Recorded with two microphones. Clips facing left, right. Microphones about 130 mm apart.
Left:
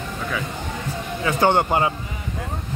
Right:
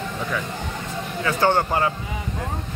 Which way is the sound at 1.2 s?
20° left (ahead or behind).